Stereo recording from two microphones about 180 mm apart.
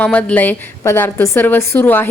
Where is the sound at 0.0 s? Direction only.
10° left (ahead or behind).